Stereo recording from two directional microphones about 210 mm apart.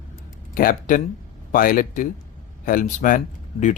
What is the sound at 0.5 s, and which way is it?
Speech, 45° left (ahead or behind).